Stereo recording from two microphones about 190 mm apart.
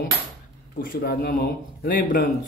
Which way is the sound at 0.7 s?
55° left (ahead or behind).